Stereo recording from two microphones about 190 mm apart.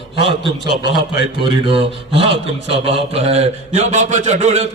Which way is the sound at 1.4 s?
25° right (ahead or behind).